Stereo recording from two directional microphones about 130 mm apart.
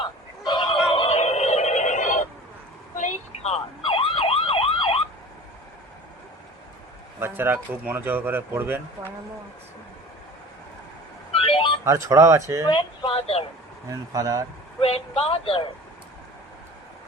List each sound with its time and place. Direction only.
0.0 s a sound: 35° left (ahead or behind); by 2.2 s 75° left (ahead or behind)
2.9 s emergency vehicle: 70° left (ahead or behind); by 4.9 s 45° left (ahead or behind)
7.2 s speech: 15° right (ahead or behind)
11.3 s music: 45° left (ahead or behind)
11.9 s speech: 25° right (ahead or behind)
12.6 s a sound: 35° left (ahead or behind)
14.1 s speech: 30° right (ahead or behind)
14.8 s speech: 50° left (ahead or behind)